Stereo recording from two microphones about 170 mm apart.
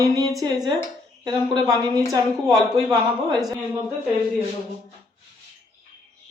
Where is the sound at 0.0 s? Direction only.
20° right (ahead or behind).